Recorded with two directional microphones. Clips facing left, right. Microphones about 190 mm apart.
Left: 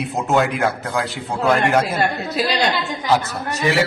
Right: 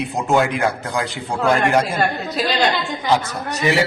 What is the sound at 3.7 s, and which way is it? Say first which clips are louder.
Speech: right 1 dB; 15° right (ahead or behind).